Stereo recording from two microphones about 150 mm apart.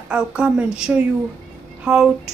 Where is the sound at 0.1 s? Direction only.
5° right (ahead or behind).